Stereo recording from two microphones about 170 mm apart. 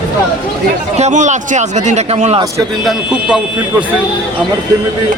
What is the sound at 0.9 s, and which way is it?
Speech, 45° right (ahead or behind).